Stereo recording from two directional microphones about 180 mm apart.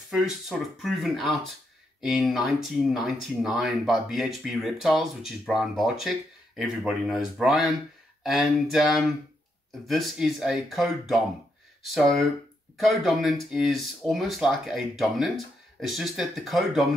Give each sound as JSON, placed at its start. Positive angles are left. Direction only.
{"t": 0.1, "sound": "speech", "side_deg": 0}
{"t": 12.8, "sound": "speech", "side_deg": 0}